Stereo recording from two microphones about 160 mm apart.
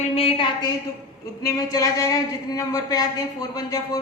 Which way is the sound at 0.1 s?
35° left (ahead or behind).